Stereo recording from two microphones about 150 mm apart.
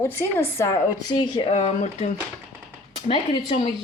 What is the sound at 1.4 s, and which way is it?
Speech, 45° left (ahead or behind).